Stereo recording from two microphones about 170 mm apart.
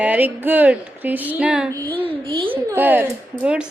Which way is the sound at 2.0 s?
30° right (ahead or behind).